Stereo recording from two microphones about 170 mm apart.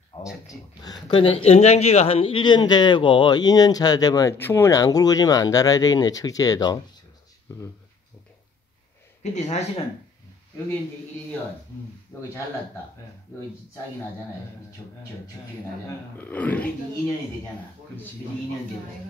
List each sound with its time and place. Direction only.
0.1 s a sound: 35° left (ahead or behind)
1.0 s a man's voice: 30° left (ahead or behind)
9.2 s speech: 45° left (ahead or behind)
12.1 s speech: 15° left (ahead or behind)
16.2 s speech: 10° left (ahead or behind)